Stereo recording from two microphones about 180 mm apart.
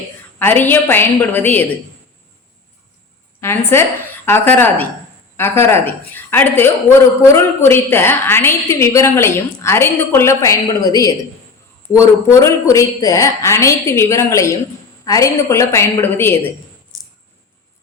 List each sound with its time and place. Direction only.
0.3 s a woman's voice: 10° left (ahead or behind)
3.4 s a woman's voice: 15° left (ahead or behind)